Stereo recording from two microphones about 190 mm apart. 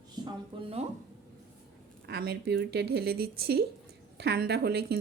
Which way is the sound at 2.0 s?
60° right (ahead or behind).